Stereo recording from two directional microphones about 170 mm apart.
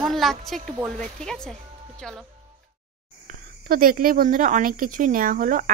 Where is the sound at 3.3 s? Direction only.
55° right (ahead or behind).